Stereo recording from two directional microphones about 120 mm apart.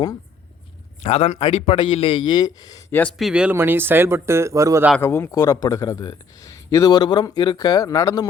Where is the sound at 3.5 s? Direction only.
20° right (ahead or behind).